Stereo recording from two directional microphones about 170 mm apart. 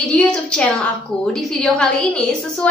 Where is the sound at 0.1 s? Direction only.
5° left (ahead or behind).